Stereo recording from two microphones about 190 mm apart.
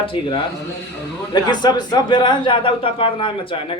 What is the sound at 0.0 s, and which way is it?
Speech, 30° left (ahead or behind).